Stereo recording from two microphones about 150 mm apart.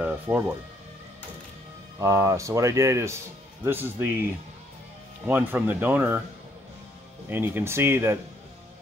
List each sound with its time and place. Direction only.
0.3 s speech: 5° right (ahead or behind)
2.0 s speech: 20° right (ahead or behind)
7.2 s speech: 15° right (ahead or behind)